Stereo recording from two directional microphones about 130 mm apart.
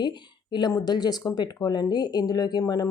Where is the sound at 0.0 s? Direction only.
35° left (ahead or behind).